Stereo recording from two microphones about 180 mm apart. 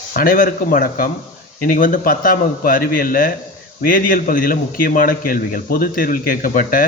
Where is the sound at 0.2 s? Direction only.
50° left (ahead or behind).